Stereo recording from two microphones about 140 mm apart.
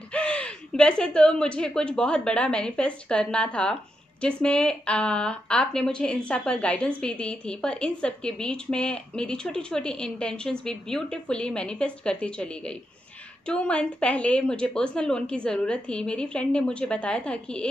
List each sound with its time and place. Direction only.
0.1 s speech: 10° left (ahead or behind)